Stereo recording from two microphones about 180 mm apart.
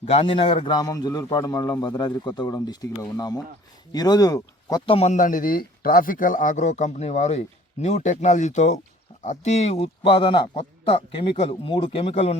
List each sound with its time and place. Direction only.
0.0 s a man's voice: 30° left (ahead or behind)
4.9 s a man's voice: 40° left (ahead or behind)